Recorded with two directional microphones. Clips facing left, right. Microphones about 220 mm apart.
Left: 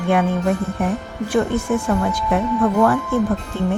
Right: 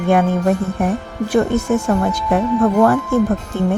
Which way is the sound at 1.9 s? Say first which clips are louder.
Right 2 dB; 40° right (ahead or behind).